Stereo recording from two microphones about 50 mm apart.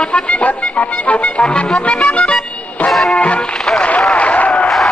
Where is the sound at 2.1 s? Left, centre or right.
Left.